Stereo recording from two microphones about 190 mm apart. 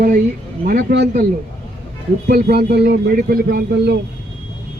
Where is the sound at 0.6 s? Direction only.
60° right (ahead or behind).